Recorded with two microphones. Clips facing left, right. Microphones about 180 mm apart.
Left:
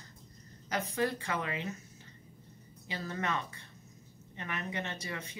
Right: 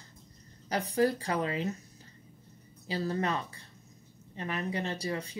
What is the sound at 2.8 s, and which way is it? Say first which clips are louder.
Speech: right 6 dB; 35° right (ahead or behind).